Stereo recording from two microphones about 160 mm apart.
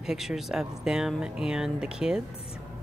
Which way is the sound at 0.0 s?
5° right (ahead or behind).